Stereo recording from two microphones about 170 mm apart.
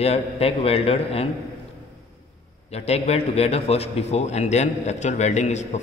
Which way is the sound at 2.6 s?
40° left (ahead or behind).